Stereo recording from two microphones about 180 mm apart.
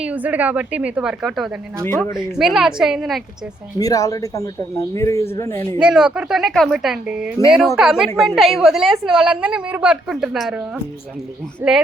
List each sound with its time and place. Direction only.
0.0 s a woman's voice: 10° right (ahead or behind)
1.8 s speech: 10° left (ahead or behind)
2.1 s a woman's voice: centre (ahead or behind)
3.8 s speech: 20° left (ahead or behind)
5.8 s a woman's voice: 5° right (ahead or behind)
11.6 s a woman's voice: 10° right (ahead or behind)